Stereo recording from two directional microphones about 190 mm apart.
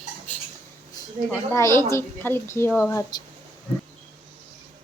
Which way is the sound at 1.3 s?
15° left (ahead or behind).